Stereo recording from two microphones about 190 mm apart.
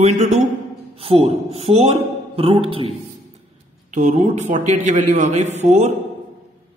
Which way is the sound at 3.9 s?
40° right (ahead or behind).